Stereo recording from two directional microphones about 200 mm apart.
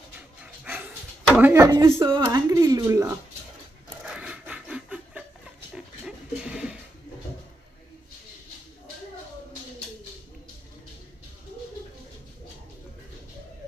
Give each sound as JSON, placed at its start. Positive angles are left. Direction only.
{"t": 0.4, "sound": "dog", "side_deg": -10}
{"t": 1.4, "sound": "speech", "side_deg": -15}
{"t": 4.1, "sound": "a sound", "side_deg": -5}